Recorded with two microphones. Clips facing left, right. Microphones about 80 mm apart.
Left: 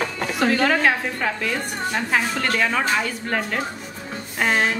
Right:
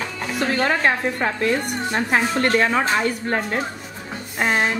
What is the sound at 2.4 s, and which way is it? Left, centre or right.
Speech, right.